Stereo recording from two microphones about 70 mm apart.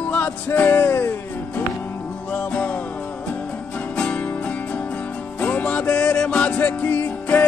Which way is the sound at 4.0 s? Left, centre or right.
Centre.